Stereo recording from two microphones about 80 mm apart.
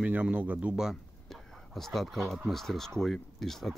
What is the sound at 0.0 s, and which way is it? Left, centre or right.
A man's voice, centre.